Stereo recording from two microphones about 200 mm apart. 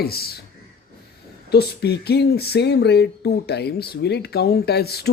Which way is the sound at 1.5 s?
55° left (ahead or behind).